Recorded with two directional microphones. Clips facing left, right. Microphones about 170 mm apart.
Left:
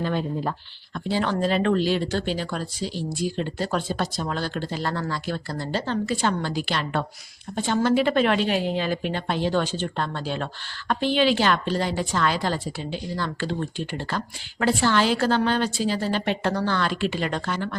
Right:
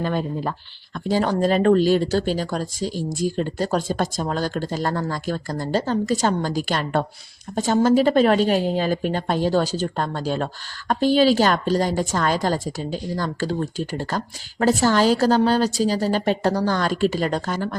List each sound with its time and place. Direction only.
0.0 s speech: 45° right (ahead or behind)